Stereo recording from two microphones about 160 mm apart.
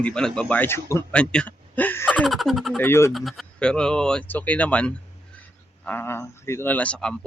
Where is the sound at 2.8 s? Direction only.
15° left (ahead or behind).